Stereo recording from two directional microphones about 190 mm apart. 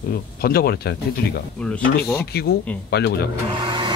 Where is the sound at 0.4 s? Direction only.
50° left (ahead or behind).